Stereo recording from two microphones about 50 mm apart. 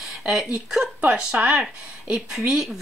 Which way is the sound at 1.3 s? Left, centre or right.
Right.